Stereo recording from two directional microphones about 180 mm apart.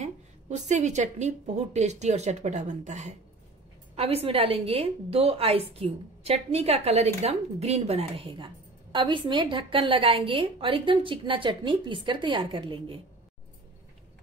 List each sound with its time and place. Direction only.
0.0 s a woman's voice: 40° right (ahead or behind)